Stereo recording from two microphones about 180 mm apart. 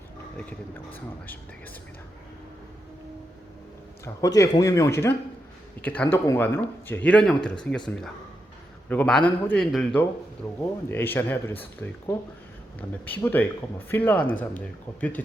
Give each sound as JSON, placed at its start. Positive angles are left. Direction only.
{"t": 4.0, "sound": "speech", "side_deg": 20}
{"t": 8.9, "sound": "speech", "side_deg": 5}